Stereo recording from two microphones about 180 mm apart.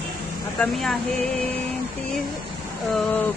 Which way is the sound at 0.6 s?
5° left (ahead or behind).